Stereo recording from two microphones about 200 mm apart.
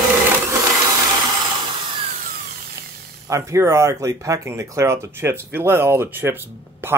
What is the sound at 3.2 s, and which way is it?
Speech, 15° right (ahead or behind).